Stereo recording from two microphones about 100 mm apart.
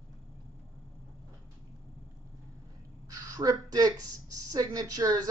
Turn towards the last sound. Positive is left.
turn(degrees=-40)  # may be behind; listen again after turning